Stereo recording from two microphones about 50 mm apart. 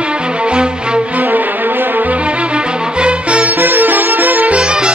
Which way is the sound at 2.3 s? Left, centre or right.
Right.